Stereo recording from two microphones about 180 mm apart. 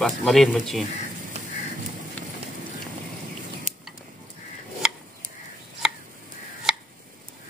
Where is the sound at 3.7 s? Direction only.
40° right (ahead or behind).